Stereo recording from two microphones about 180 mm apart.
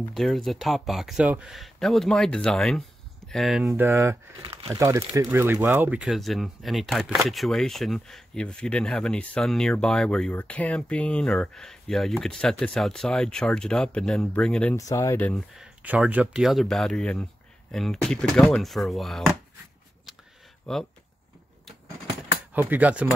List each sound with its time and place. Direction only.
0.1 s speech: centre (ahead or behind)
4.4 s speech: 30° right (ahead or behind)
4.6 s speech: 15° right (ahead or behind); by 14.8 s 5° left (ahead or behind)
14.8 s speech: 20° left (ahead or behind)
15.3 s speech: centre (ahead or behind)
20.7 s speech: 5° left (ahead or behind)
22.5 s speech: 10° right (ahead or behind)